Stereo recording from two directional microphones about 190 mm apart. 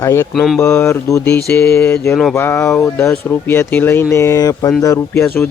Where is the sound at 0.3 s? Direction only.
Centre (ahead or behind).